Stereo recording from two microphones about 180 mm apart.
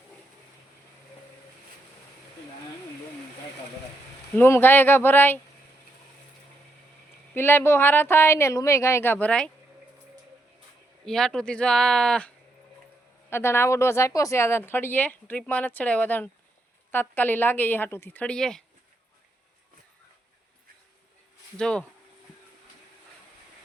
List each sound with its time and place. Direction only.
4.4 s speech: 10° left (ahead or behind)
7.3 s speech: 10° left (ahead or behind)
11.0 s speech: 5° left (ahead or behind)
13.3 s speech: 15° left (ahead or behind)
21.6 s speech: 5° left (ahead or behind)